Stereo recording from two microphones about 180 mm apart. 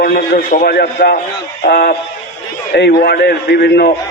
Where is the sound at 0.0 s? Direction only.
60° left (ahead or behind).